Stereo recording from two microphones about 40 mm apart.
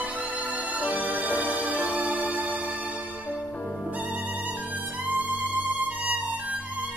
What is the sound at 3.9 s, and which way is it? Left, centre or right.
Violin, right.